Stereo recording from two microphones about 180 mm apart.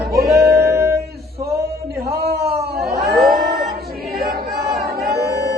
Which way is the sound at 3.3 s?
60° right (ahead or behind).